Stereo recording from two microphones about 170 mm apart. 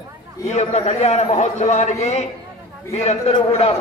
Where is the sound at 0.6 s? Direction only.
40° left (ahead or behind).